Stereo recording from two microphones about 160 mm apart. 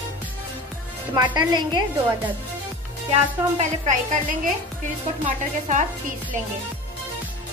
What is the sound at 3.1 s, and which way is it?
Speech, 45° right (ahead or behind).